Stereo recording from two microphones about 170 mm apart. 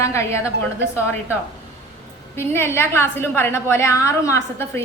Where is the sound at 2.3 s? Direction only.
15° left (ahead or behind).